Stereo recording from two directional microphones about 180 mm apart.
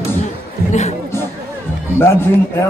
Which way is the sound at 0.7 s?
40° left (ahead or behind).